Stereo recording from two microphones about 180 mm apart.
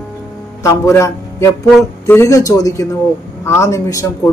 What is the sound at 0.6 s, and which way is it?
A man's voice, 15° left (ahead or behind).